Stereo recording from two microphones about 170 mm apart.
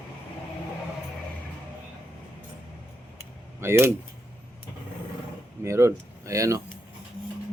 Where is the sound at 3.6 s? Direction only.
15° right (ahead or behind).